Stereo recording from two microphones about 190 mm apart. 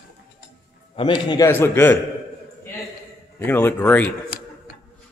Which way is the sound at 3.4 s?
10° left (ahead or behind).